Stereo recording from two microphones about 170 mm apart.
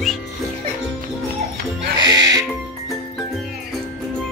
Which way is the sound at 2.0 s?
20° right (ahead or behind).